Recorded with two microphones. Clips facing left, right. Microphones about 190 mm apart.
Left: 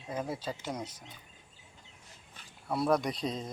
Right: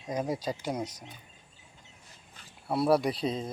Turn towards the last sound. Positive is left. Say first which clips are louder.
# right 4 dB
turn(degrees=-5)  # may be behind; listen again after turning